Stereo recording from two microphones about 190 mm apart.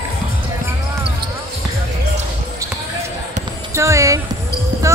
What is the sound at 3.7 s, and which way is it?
Music, 15° right (ahead or behind).